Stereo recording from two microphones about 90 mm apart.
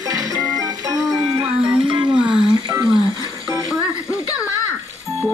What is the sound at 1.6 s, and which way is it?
Music, 65° right (ahead or behind).